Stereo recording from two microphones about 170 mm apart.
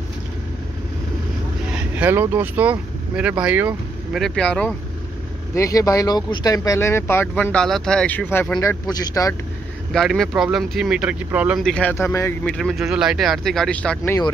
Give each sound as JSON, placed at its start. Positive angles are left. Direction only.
{"t": 1.7, "sound": "speech", "side_deg": -5}
{"t": 4.2, "sound": "speech", "side_deg": 5}
{"t": 5.5, "sound": "speech", "side_deg": 20}
{"t": 9.9, "sound": "speech", "side_deg": 0}
{"t": 11.6, "sound": "speech", "side_deg": 5}
{"t": 12.4, "sound": "speech", "side_deg": 0}